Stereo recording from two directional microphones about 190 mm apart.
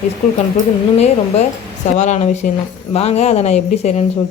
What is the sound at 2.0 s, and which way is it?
Speech, 35° left (ahead or behind).